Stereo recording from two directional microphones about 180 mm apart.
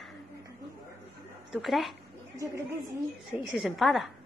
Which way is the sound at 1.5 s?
Centre (ahead or behind).